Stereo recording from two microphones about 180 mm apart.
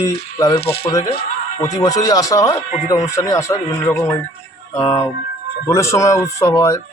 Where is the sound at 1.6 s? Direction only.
20° left (ahead or behind).